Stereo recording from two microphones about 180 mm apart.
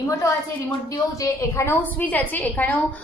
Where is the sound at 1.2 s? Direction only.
15° left (ahead or behind).